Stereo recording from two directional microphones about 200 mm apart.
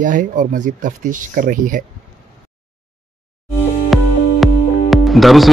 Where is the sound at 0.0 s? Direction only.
40° right (ahead or behind).